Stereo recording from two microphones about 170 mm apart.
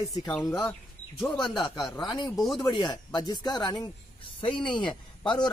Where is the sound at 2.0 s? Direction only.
25° left (ahead or behind).